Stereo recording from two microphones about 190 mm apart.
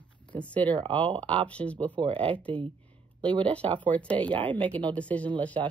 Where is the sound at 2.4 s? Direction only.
5° left (ahead or behind).